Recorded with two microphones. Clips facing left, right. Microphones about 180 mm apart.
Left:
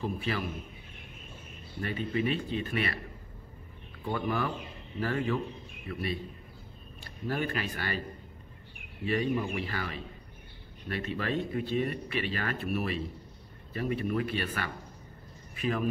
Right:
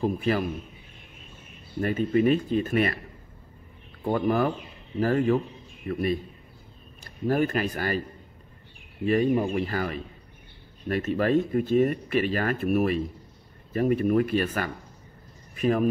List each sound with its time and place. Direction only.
0.0 s speech: 40° right (ahead or behind)
1.8 s speech: 45° right (ahead or behind)
4.0 s speech: 40° right (ahead or behind)
7.2 s speech: 45° right (ahead or behind)
9.0 s speech: 45° right (ahead or behind)